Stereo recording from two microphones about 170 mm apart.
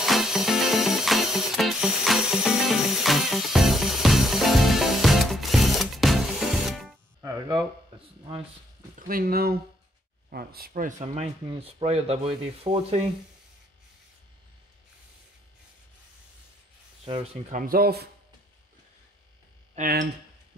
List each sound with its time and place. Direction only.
0.0 s music: centre (ahead or behind)
7.2 s music: 20° right (ahead or behind)
9.0 s speech: 60° right (ahead or behind); by 13.0 s 35° right (ahead or behind)
17.5 s speech: 55° right (ahead or behind)
19.7 s speech: 50° right (ahead or behind)